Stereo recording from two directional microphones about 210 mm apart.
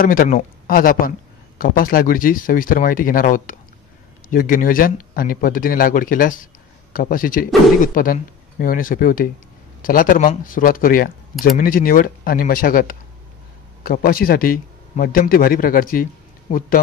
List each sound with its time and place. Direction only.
0.0 s speech: 40° left (ahead or behind)